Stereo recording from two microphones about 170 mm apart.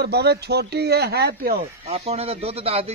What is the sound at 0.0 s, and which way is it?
Speech, 75° right (ahead or behind).